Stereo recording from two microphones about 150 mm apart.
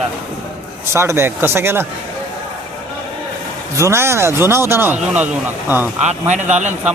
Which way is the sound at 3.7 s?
20° right (ahead or behind).